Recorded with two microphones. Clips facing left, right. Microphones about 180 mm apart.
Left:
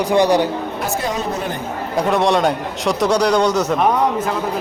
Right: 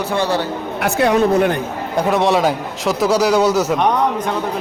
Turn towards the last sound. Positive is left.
turn(degrees=5)  # may be behind; listen again after turning